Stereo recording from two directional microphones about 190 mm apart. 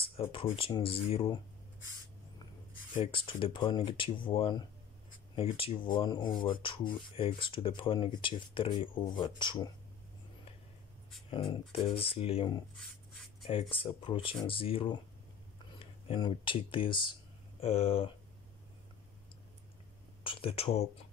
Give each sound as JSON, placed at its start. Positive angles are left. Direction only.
{"t": 0.2, "sound": "speech", "side_deg": 30}
{"t": 2.9, "sound": "speech", "side_deg": 30}
{"t": 11.2, "sound": "speech", "side_deg": 25}
{"t": 16.1, "sound": "speech", "side_deg": 25}
{"t": 20.2, "sound": "speech", "side_deg": 30}